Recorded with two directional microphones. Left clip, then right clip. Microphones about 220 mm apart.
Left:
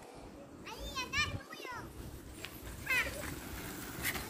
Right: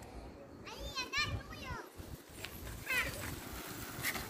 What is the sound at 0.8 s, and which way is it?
Children playing, centre (ahead or behind).